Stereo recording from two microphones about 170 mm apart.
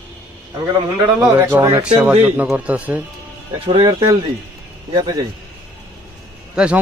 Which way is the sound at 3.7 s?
30° right (ahead or behind).